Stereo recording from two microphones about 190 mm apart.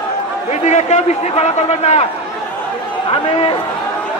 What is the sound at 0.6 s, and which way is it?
A man's voice, 35° left (ahead or behind).